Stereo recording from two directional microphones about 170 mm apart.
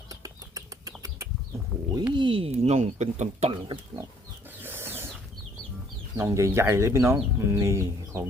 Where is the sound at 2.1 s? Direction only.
30° right (ahead or behind).